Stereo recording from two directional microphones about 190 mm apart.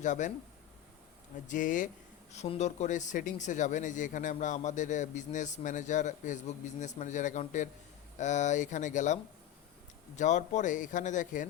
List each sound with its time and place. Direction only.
0.0 s speech: 40° left (ahead or behind)
1.5 s speech: 45° left (ahead or behind)
10.2 s speech: 40° left (ahead or behind)